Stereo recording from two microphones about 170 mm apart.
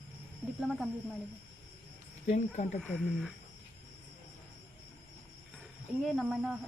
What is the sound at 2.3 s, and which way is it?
Speech, 45° left (ahead or behind).